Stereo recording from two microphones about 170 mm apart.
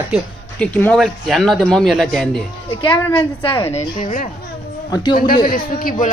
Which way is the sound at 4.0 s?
45° left (ahead or behind).